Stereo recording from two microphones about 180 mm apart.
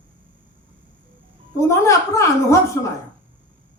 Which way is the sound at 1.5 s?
15° left (ahead or behind).